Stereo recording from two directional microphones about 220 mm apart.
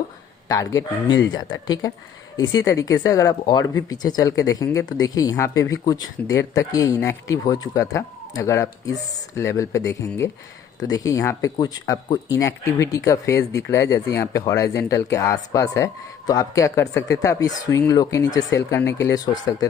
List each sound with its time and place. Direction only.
0.5 s speech: 15° left (ahead or behind)